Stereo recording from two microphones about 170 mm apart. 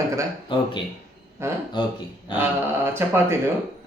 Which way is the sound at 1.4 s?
15° right (ahead or behind).